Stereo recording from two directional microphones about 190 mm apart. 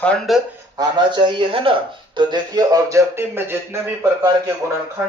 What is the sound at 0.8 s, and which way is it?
Speech, 25° right (ahead or behind).